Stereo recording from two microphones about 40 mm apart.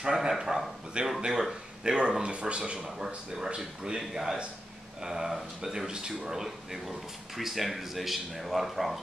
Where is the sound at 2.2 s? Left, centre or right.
Right.